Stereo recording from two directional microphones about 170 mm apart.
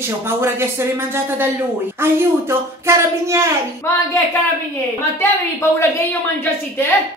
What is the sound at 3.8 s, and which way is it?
Speech, 15° left (ahead or behind).